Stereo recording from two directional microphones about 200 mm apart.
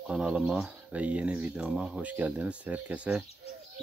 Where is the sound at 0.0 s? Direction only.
5° right (ahead or behind).